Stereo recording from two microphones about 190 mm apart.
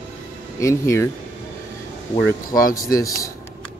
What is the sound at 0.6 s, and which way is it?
Speech, 15° left (ahead or behind).